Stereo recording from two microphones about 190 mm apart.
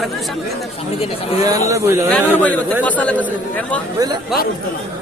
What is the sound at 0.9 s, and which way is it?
Speech, 30° left (ahead or behind).